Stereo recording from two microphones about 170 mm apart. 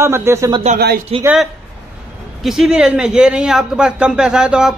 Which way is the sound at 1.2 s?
5° right (ahead or behind).